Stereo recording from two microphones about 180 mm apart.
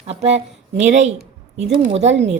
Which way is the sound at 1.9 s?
40° right (ahead or behind).